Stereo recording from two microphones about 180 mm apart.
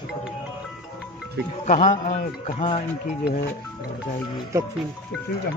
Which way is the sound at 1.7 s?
45° left (ahead or behind).